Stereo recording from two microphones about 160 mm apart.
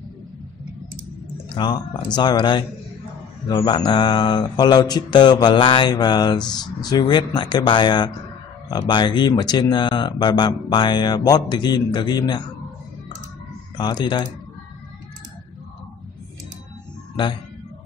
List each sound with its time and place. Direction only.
1.5 s speech: 30° left (ahead or behind)
13.7 s speech: 25° left (ahead or behind)